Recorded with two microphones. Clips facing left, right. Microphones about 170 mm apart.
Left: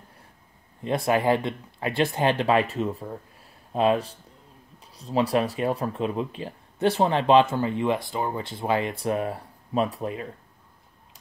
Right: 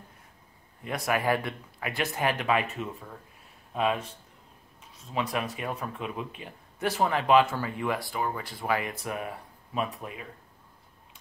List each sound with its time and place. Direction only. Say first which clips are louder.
0.8 s speech: left 5 dB; 25° left (ahead or behind)